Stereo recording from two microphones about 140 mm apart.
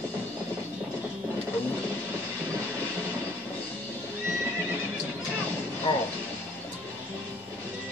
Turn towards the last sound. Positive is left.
turn(degrees=35)  # may be behind; listen again after turning